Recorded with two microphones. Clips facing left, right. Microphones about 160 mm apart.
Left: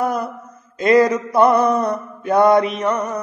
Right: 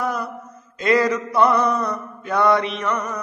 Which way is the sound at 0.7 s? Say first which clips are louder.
Left 5 dB; 45° left (ahead or behind).